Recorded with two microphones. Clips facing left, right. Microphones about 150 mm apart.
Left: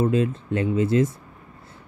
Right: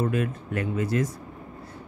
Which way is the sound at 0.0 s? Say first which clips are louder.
Left 5 dB; 25° left (ahead or behind).